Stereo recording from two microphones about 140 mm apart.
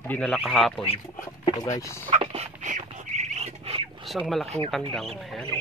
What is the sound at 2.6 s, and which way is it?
Bird, 60° right (ahead or behind).